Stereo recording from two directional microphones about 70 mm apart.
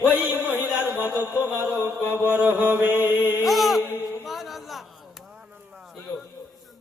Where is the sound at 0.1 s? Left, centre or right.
Right.